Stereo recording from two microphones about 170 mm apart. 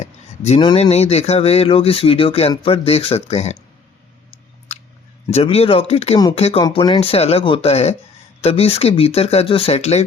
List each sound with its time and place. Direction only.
0.0 s speech: 40° left (ahead or behind)
5.3 s speech: 35° left (ahead or behind)
6.6 s speech: 25° left (ahead or behind)